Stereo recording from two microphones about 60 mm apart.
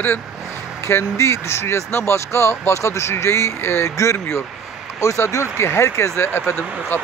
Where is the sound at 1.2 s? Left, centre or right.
Left.